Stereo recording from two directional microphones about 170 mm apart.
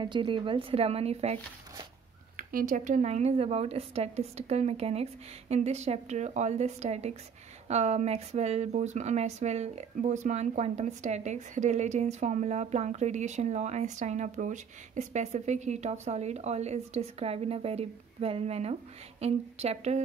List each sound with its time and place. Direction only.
0.0 s speech: 30° right (ahead or behind)
2.3 s speech: 50° right (ahead or behind)